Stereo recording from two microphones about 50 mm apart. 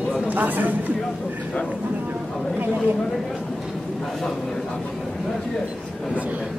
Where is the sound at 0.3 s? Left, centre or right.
Right.